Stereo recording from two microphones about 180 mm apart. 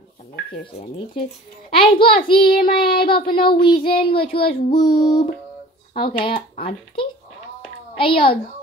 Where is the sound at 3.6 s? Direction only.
30° left (ahead or behind).